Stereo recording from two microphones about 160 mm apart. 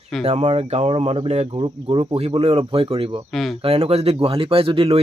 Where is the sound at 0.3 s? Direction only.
40° right (ahead or behind).